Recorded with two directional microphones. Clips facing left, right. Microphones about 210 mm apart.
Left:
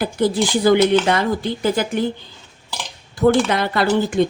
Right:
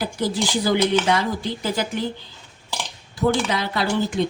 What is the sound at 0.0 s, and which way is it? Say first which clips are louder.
Speech: left 5 dB; 60° left (ahead or behind).